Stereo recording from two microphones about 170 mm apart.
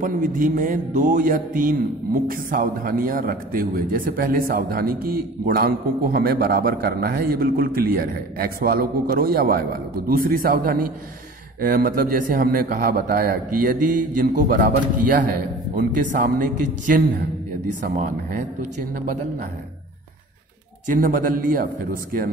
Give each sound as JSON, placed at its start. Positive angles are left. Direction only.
{"t": 0.0, "sound": "speech", "side_deg": -50}
{"t": 20.9, "sound": "speech", "side_deg": -55}